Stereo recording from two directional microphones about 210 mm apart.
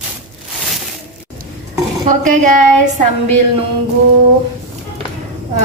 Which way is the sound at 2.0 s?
40° right (ahead or behind).